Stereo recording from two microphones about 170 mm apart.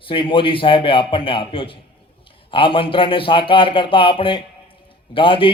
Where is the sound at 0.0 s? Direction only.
30° left (ahead or behind).